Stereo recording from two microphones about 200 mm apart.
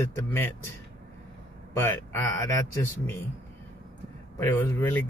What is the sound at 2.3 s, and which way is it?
Speech, 15° left (ahead or behind).